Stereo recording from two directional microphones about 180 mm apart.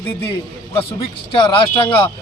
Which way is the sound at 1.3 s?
30° left (ahead or behind).